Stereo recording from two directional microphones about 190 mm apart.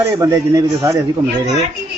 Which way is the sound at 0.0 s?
15° right (ahead or behind).